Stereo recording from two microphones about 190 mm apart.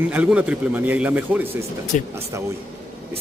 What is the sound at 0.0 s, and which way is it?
A man's voice, 10° right (ahead or behind).